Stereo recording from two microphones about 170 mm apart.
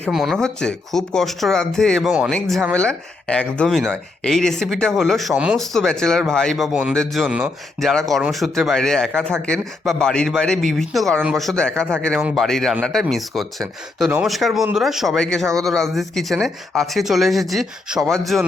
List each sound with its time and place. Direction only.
0.1 s speech: centre (ahead or behind)